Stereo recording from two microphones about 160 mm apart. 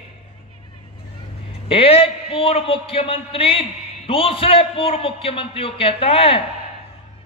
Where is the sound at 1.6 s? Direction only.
35° left (ahead or behind).